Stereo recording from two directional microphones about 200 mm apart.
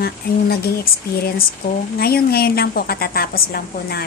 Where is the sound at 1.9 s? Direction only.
50° left (ahead or behind).